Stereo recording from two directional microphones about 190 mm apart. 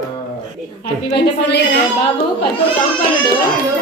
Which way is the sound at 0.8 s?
65° left (ahead or behind).